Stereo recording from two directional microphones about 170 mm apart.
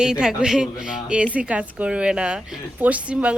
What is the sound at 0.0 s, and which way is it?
A woman's voice, 5° right (ahead or behind).